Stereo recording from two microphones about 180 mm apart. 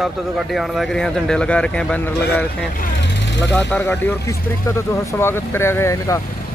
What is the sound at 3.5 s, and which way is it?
Speech, 10° left (ahead or behind).